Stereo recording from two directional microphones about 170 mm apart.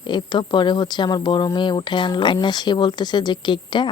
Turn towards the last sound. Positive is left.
turn(degrees=25)  # may be behind; listen again after turning